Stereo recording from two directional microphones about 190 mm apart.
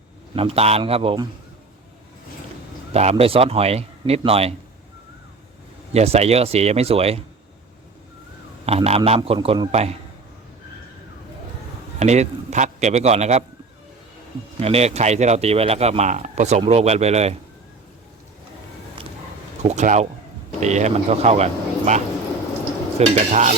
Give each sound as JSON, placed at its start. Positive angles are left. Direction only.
{"t": 0.3, "sound": "speech", "side_deg": -30}
{"t": 2.9, "sound": "speech", "side_deg": -35}
{"t": 5.9, "sound": "speech", "side_deg": -35}
{"t": 8.6, "sound": "speech", "side_deg": -35}
{"t": 11.9, "sound": "a man's voice", "side_deg": -35}
{"t": 14.6, "sound": "speech", "side_deg": -35}
{"t": 19.6, "sound": "speech", "side_deg": -40}